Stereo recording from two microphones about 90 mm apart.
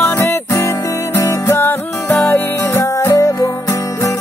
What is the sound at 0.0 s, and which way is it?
Music, 25° left (ahead or behind).